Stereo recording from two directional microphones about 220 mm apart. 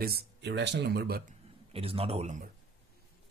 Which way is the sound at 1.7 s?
25° right (ahead or behind).